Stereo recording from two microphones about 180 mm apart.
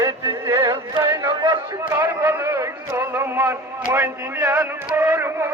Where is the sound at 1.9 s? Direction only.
10° right (ahead or behind).